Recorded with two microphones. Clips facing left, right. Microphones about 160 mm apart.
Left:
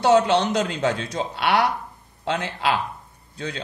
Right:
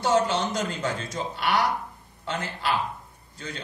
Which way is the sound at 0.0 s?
70° left (ahead or behind).